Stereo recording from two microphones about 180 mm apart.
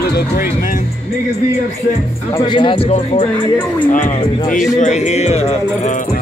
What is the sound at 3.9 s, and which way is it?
Speech, 45° left (ahead or behind).